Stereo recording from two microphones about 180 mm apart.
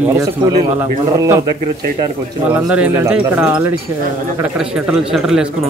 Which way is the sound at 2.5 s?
5° right (ahead or behind).